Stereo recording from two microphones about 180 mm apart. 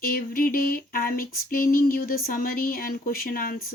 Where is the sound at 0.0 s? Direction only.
55° left (ahead or behind).